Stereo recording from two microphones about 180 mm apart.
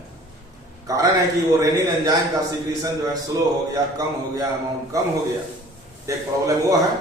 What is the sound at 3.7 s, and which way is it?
A man's voice, 20° right (ahead or behind).